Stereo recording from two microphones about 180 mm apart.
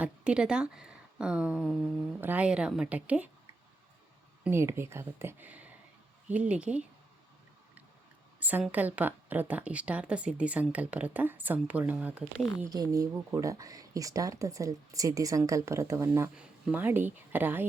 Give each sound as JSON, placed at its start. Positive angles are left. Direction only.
{"t": 0.0, "sound": "a woman's voice", "side_deg": -5}
{"t": 4.4, "sound": "a woman's voice", "side_deg": -15}
{"t": 8.4, "sound": "a woman's voice", "side_deg": -10}
{"t": 12.7, "sound": "a woman's voice", "side_deg": -20}